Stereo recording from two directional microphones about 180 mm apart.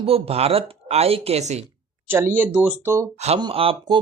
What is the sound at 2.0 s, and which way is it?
Speech, 15° right (ahead or behind).